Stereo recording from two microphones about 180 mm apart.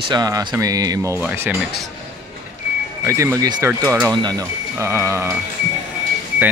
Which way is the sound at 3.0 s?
15° right (ahead or behind).